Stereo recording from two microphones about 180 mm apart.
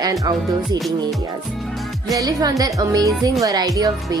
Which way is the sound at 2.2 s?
20° right (ahead or behind).